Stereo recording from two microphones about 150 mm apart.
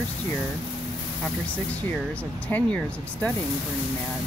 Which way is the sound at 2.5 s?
10° left (ahead or behind).